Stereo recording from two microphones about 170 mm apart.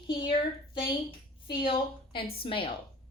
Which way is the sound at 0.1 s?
25° left (ahead or behind).